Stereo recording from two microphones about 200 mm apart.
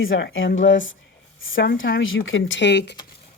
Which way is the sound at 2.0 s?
75° left (ahead or behind).